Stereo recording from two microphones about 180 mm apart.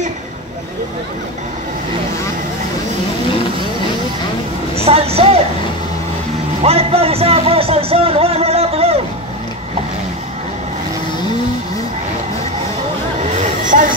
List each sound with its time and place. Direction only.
4.7 s a man's voice: 35° right (ahead or behind)
6.6 s a man's voice: 35° right (ahead or behind)
13.7 s speech: 45° right (ahead or behind)